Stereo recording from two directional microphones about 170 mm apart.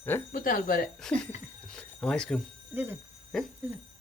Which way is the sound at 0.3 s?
55° left (ahead or behind).